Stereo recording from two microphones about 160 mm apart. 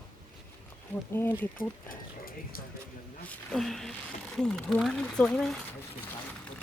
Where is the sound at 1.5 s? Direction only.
65° left (ahead or behind).